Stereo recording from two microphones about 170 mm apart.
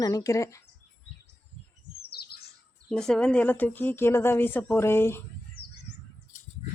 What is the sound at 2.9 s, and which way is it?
Speech, 5° left (ahead or behind).